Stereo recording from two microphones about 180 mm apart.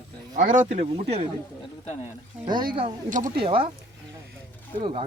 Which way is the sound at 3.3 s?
30° right (ahead or behind).